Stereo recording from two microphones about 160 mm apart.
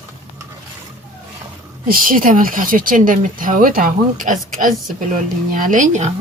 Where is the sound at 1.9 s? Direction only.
60° right (ahead or behind).